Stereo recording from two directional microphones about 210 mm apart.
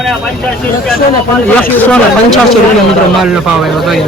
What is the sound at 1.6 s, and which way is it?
Speech, 5° left (ahead or behind).